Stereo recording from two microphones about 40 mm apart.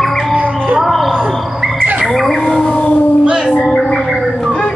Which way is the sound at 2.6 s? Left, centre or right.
Left.